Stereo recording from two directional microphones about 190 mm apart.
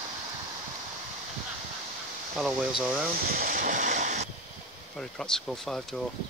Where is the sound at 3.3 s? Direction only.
45° right (ahead or behind).